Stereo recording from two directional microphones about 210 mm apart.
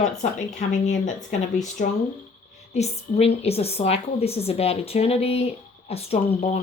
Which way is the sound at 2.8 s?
30° left (ahead or behind).